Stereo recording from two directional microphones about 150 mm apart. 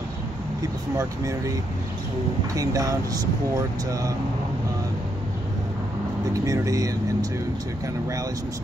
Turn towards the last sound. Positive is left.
turn(degrees=-25)  # may be behind; listen again after turning